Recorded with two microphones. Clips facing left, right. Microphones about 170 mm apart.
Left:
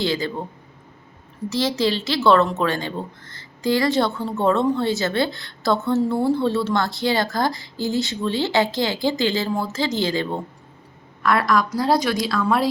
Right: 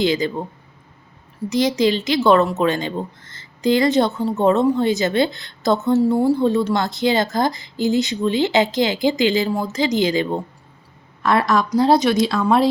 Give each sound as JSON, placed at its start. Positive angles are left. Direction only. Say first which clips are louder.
{"t": 0.0, "sound": "speech", "louder": "right 4 dB", "side_deg": -20}
{"t": 1.5, "sound": "a woman's voice", "louder": "right 4 dB", "side_deg": -15}